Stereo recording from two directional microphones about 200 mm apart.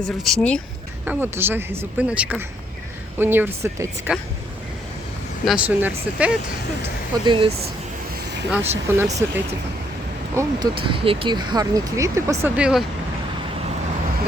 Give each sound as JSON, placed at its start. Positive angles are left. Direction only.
{"t": 0.3, "sound": "speech", "side_deg": 5}
{"t": 1.0, "sound": "speech", "side_deg": -10}
{"t": 5.5, "sound": "speech", "side_deg": -5}
{"t": 7.3, "sound": "speech", "side_deg": -25}
{"t": 8.1, "sound": "vehicle", "side_deg": -55}
{"t": 8.4, "sound": "speech", "side_deg": -5}